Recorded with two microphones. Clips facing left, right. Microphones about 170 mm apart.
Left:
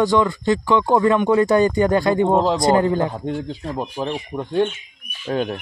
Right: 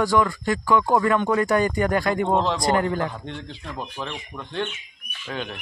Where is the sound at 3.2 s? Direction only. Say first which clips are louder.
Left 9 dB; 40° left (ahead or behind).